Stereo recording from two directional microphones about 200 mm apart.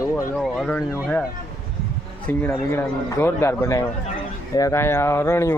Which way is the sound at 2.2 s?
10° left (ahead or behind).